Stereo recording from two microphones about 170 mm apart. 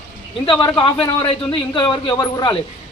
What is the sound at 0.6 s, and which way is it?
A man's voice, 30° left (ahead or behind).